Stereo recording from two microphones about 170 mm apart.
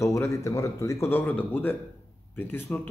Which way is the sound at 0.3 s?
20° left (ahead or behind).